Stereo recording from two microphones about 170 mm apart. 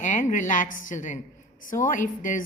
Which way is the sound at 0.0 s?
50° left (ahead or behind).